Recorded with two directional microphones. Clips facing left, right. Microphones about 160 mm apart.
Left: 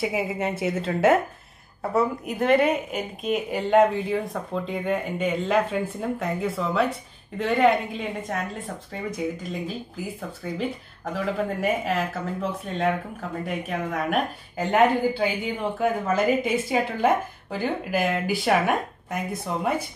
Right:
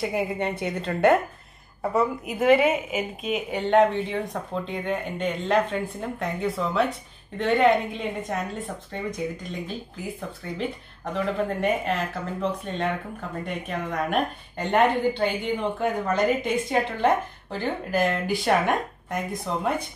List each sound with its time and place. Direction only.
0.0 s a woman's voice: centre (ahead or behind)
11.1 s a woman's voice: 5° left (ahead or behind)